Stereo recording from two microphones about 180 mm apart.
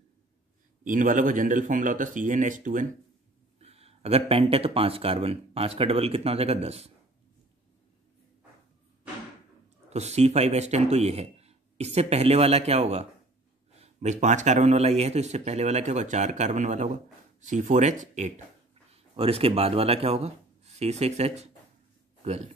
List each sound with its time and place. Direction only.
0.8 s a man's voice: 45° right (ahead or behind)
3.5 s speech: 35° right (ahead or behind)
9.8 s speech: 35° right (ahead or behind)